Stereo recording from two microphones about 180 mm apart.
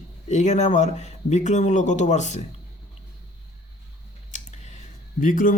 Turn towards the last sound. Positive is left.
turn(degrees=45)  # may be behind; listen again after turning